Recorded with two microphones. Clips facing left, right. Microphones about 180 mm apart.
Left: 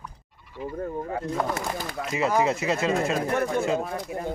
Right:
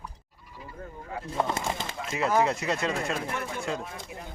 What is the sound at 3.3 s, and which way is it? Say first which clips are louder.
Speech: left 10 dB; 55° left (ahead or behind).